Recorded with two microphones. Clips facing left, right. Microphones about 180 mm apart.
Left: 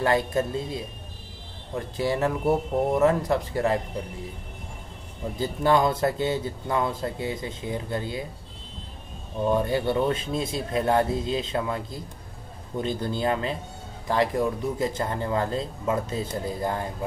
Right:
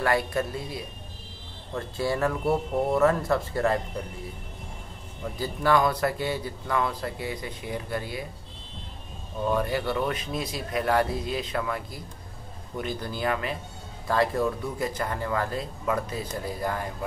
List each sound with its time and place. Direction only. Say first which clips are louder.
0.0 s speech: left 2 dB; 25° left (ahead or behind)
5.2 s speech: left 2 dB; 25° left (ahead or behind)
9.4 s speech: left 3 dB; 25° left (ahead or behind)
14.0 s speech: left 1 dB; 15° left (ahead or behind)